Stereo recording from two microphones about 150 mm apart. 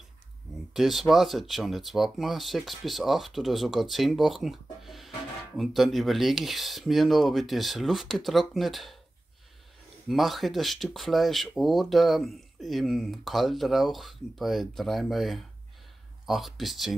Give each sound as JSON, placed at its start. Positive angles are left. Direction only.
{"t": 0.7, "sound": "speech", "side_deg": 0}
{"t": 10.0, "sound": "speech", "side_deg": 0}